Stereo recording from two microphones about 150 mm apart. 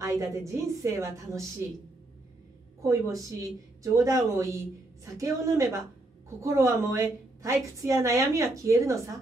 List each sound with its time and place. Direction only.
0.0 s a woman's voice: 20° right (ahead or behind)
2.8 s a woman's voice: 20° right (ahead or behind)